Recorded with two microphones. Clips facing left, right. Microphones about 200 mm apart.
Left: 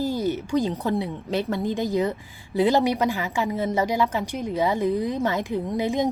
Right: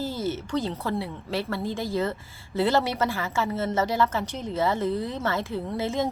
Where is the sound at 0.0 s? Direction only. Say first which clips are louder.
Left 4 dB; 15° left (ahead or behind).